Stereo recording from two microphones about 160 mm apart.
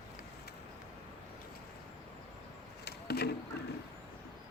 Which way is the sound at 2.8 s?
90° left.